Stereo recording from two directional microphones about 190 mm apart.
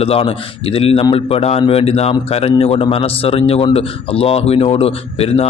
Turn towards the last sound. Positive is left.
turn(degrees=30)  # may be behind; listen again after turning